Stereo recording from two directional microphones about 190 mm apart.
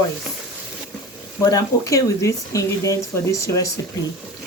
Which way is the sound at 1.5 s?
20° left (ahead or behind).